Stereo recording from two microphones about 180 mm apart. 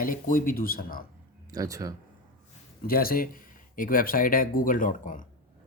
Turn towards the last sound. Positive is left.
turn(degrees=45)  # may be behind; listen again after turning